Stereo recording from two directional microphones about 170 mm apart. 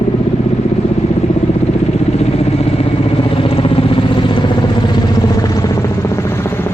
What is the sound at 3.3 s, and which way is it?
Vehicle, 35° left (ahead or behind).